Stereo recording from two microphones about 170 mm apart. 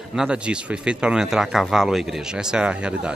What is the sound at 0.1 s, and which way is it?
A man's voice, 5° right (ahead or behind).